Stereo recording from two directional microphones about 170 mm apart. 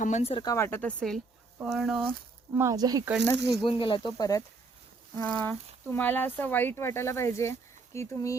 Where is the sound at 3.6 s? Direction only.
30° left (ahead or behind).